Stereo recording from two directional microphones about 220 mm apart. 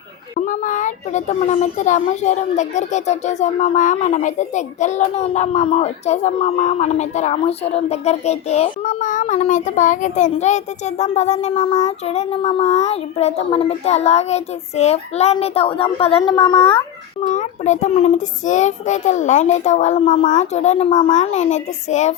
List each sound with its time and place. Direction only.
0.3 s a child's voice: 35° left (ahead or behind)
17.2 s a child's voice: 35° left (ahead or behind)